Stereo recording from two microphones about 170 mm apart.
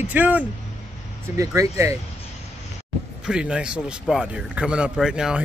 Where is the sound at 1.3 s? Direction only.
20° right (ahead or behind).